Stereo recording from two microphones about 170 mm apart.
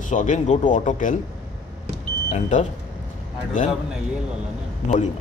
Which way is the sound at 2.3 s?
45° left (ahead or behind).